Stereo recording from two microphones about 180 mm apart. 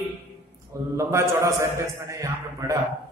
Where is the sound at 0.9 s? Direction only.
15° right (ahead or behind).